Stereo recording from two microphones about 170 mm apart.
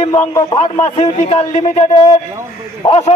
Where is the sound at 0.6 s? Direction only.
35° left (ahead or behind).